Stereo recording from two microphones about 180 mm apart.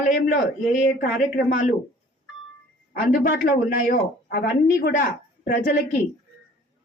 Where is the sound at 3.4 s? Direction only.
50° left (ahead or behind).